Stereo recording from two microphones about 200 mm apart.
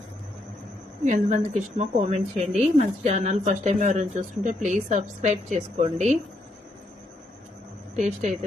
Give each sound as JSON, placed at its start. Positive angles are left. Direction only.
{"t": 1.0, "sound": "speech", "side_deg": -40}
{"t": 7.9, "sound": "speech", "side_deg": -35}